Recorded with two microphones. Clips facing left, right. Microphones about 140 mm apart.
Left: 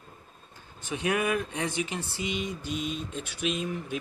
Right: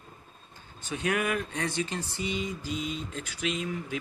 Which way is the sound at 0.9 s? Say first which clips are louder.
Left 1 dB; 15° left (ahead or behind).